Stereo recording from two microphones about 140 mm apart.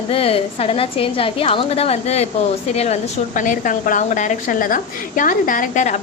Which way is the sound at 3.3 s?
70° left (ahead or behind).